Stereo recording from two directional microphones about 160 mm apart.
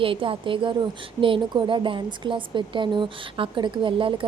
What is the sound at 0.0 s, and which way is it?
Speech, 35° right (ahead or behind).